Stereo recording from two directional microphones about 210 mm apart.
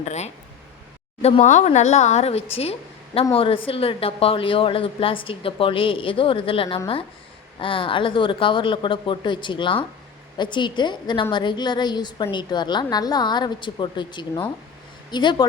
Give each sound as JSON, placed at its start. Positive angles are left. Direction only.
{"t": 0.0, "sound": "a woman's voice", "side_deg": 30}